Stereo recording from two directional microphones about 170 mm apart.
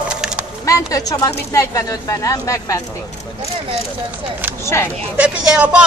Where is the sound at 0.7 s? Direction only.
20° left (ahead or behind).